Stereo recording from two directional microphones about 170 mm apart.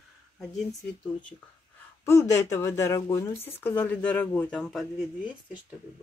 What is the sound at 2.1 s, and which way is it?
Speech, 20° left (ahead or behind).